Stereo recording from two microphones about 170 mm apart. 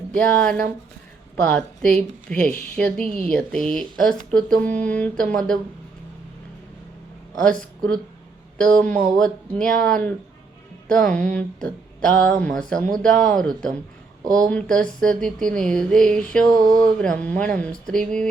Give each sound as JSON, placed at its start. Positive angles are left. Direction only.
{"t": 0.1, "sound": "a woman's voice", "side_deg": 5}
{"t": 7.4, "sound": "speech", "side_deg": 5}
{"t": 16.6, "sound": "a sound", "side_deg": -20}
{"t": 16.8, "sound": "speech", "side_deg": 5}